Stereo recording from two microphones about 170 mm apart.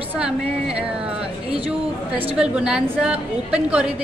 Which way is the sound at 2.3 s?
5° right (ahead or behind).